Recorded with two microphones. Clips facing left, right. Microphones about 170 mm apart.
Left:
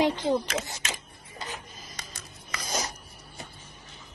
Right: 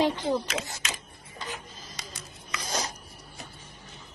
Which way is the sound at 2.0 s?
40° left (ahead or behind).